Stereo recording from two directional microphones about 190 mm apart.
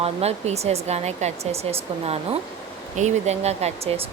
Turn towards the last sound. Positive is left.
turn(degrees=-30)  # may be behind; listen again after turning